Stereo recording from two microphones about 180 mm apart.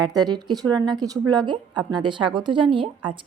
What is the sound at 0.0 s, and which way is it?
A woman's voice, 20° right (ahead or behind).